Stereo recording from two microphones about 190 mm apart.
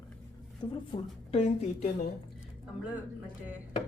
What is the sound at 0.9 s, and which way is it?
Speech, 25° left (ahead or behind).